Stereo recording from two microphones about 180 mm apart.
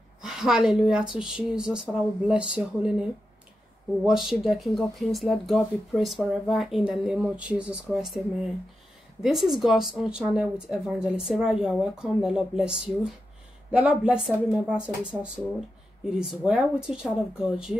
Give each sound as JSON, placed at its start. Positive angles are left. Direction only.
{"t": 0.2, "sound": "speech", "side_deg": -5}